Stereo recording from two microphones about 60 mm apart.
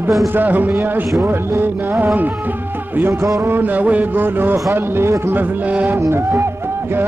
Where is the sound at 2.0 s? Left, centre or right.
Right.